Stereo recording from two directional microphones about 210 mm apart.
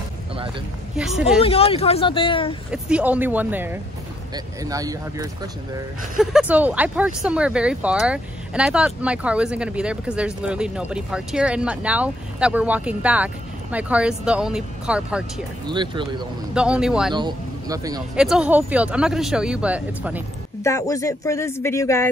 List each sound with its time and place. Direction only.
1.4 s speech: 25° left (ahead or behind)
2.7 s speech: 5° right (ahead or behind)
6.1 s speech: 5° right (ahead or behind)
15.7 s speech: 20° right (ahead or behind)
16.5 s speech: 5° right (ahead or behind)
17.1 s speech: 20° right (ahead or behind)
18.1 s speech: 5° right (ahead or behind)
20.6 s speech: 15° left (ahead or behind)